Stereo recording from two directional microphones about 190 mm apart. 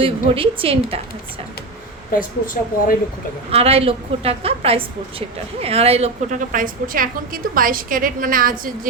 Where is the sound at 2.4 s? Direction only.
45° left (ahead or behind).